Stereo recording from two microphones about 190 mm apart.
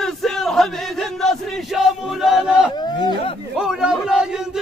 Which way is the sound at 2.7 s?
25° left (ahead or behind).